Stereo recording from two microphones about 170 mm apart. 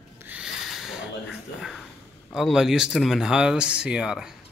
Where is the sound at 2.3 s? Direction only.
Centre (ahead or behind).